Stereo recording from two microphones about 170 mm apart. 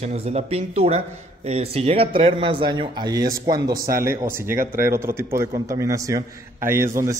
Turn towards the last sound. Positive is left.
turn(degrees=-15)  # may be behind; listen again after turning